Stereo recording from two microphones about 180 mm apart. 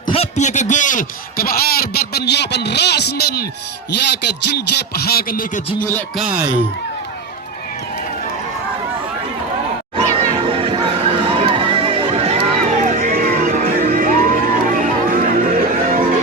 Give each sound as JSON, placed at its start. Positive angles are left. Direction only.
{"t": 0.1, "sound": "a sound", "side_deg": 35}
{"t": 6.1, "sound": "speech", "side_deg": -10}
{"t": 10.2, "sound": "music", "side_deg": -30}